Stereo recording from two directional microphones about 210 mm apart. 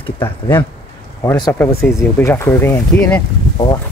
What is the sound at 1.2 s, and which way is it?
Speech, 15° left (ahead or behind).